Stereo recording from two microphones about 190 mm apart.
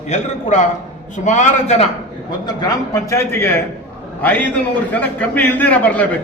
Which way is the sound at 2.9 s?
15° left (ahead or behind).